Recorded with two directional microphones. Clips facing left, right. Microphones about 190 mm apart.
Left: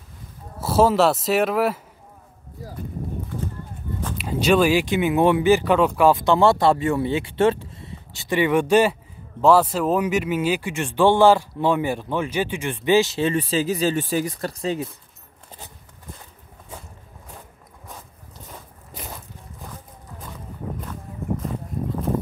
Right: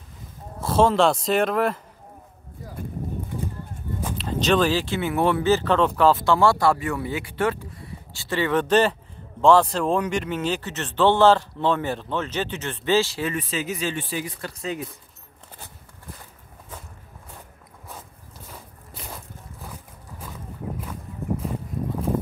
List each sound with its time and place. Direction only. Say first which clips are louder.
0.6 s speech: left 1 dB; 5° left (ahead or behind)
4.2 s speech: left 3 dB; 10° left (ahead or behind); by 14.9 s 30° left (ahead or behind)